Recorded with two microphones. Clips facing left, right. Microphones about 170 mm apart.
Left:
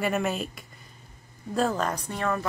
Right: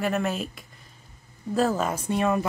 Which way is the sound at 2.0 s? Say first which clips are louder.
Right 5 dB; 15° right (ahead or behind).